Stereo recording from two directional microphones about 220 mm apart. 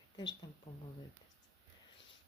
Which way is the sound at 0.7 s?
25° left (ahead or behind).